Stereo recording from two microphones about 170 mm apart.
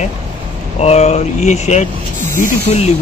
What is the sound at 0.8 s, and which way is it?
Speech, 40° left (ahead or behind).